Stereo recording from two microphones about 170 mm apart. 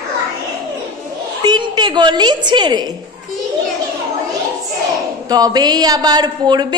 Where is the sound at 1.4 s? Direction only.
25° right (ahead or behind).